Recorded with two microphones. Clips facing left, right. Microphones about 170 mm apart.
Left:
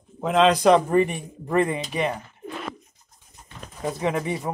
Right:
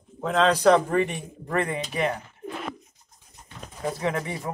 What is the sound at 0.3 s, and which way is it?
Speech, 15° left (ahead or behind).